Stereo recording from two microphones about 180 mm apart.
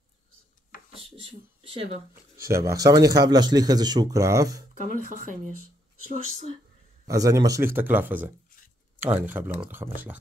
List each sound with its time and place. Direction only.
1.6 s speech: 30° right (ahead or behind)
2.4 s speech: 15° right (ahead or behind)
7.1 s speech: 20° right (ahead or behind)